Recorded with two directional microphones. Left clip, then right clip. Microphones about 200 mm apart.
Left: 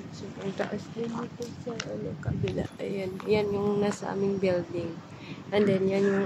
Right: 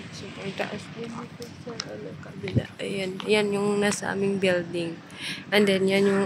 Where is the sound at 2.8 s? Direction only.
Centre (ahead or behind).